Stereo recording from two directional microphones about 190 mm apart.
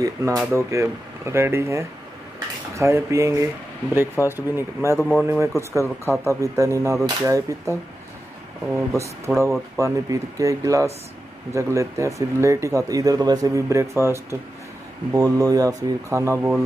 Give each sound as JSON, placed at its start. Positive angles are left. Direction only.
{"t": 0.0, "sound": "speech", "side_deg": -15}